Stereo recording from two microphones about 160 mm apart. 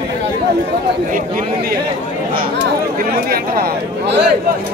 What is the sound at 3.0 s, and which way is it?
Speech, 70° right (ahead or behind).